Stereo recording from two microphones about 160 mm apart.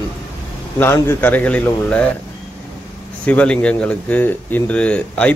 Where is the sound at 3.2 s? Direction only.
10° left (ahead or behind).